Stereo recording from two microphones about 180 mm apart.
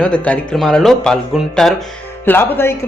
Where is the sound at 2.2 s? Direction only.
10° left (ahead or behind).